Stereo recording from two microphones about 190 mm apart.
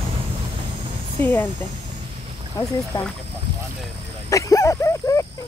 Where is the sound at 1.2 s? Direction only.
10° left (ahead or behind).